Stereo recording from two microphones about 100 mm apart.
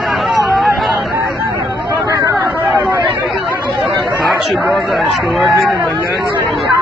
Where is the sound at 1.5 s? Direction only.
30° right (ahead or behind).